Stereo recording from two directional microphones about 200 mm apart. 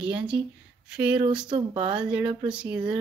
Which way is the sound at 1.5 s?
25° right (ahead or behind).